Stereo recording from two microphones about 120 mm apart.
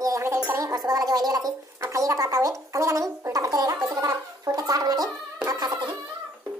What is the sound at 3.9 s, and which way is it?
Gargling, 30° right (ahead or behind).